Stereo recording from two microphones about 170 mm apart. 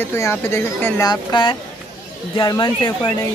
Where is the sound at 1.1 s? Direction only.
30° left (ahead or behind).